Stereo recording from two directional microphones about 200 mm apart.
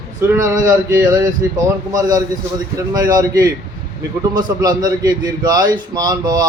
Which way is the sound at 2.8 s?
20° right (ahead or behind).